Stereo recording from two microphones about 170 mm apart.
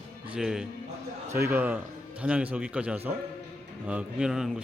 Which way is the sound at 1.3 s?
15° right (ahead or behind).